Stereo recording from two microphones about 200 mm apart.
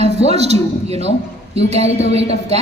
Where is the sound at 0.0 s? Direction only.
30° right (ahead or behind).